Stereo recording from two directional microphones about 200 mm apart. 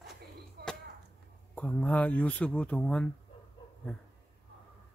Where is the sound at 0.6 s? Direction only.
55° right (ahead or behind).